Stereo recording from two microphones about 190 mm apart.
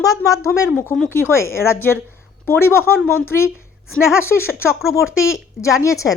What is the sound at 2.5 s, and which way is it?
Speech, 15° left (ahead or behind).